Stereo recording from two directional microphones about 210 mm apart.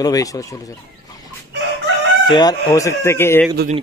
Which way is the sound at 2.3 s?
20° left (ahead or behind).